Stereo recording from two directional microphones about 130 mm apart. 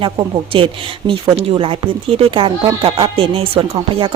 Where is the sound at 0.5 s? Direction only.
45° right (ahead or behind).